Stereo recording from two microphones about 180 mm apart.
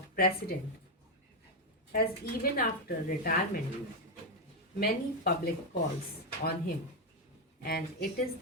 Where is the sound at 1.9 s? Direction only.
55° left (ahead or behind).